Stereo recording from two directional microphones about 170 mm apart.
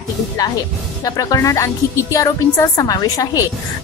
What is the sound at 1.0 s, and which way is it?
A woman's voice, 20° left (ahead or behind).